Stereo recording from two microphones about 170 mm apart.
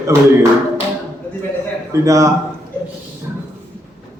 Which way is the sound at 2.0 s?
20° right (ahead or behind).